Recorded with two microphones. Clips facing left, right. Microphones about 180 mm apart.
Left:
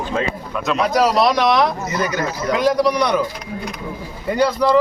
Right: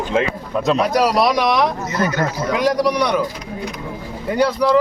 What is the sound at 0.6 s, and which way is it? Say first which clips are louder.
Speech: right 4 dB; 35° right (ahead or behind).